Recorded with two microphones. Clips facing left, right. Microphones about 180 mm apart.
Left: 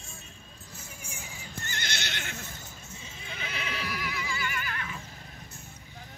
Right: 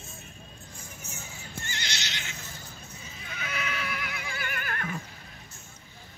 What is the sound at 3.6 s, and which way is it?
Neigh, 30° left (ahead or behind).